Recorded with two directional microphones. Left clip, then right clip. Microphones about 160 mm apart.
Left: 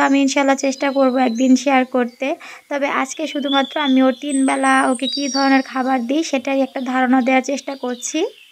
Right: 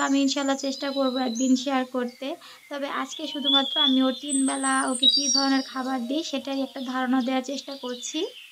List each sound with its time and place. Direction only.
0.0 s speech: 40° left (ahead or behind)